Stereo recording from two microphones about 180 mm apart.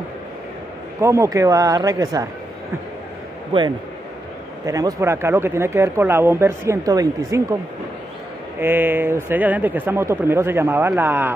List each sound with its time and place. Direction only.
1.0 s speech: 15° right (ahead or behind)
3.5 s a man's voice: 30° right (ahead or behind)
4.6 s speech: 20° right (ahead or behind)
8.5 s speech: 10° right (ahead or behind)